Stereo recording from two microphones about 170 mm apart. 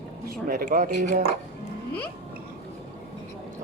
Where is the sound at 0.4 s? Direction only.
55° right (ahead or behind).